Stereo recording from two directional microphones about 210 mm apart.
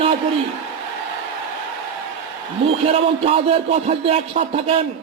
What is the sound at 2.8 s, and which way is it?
Speech, 25° right (ahead or behind).